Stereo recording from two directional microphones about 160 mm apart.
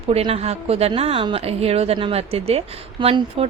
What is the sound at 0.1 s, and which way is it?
A woman's voice, 40° right (ahead or behind).